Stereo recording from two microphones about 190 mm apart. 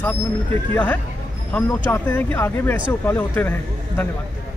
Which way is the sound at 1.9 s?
15° left (ahead or behind).